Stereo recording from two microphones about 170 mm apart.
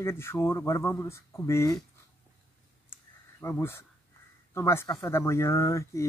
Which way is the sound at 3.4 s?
15° left (ahead or behind).